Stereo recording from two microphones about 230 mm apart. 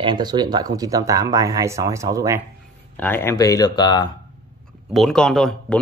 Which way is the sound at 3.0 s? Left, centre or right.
Centre.